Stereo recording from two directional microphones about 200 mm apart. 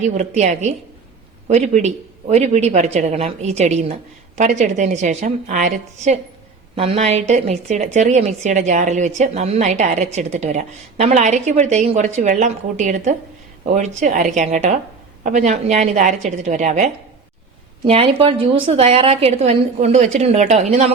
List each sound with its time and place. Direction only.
0.0 s a woman's voice: 35° right (ahead or behind)